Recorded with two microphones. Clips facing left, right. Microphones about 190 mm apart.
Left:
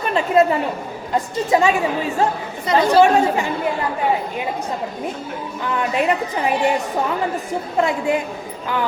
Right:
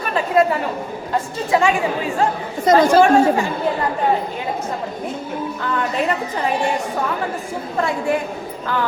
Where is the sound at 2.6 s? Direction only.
45° right (ahead or behind).